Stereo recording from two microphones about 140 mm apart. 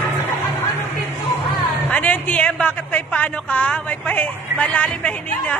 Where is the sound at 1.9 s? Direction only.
10° left (ahead or behind).